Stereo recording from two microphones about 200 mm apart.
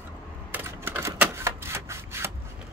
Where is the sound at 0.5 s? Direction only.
10° right (ahead or behind).